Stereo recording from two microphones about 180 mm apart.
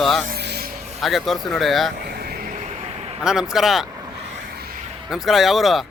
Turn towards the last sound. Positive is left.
turn(degrees=0)  # may be behind; listen again after turning